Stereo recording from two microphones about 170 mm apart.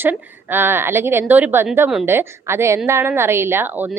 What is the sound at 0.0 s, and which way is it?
A woman's voice, 10° right (ahead or behind).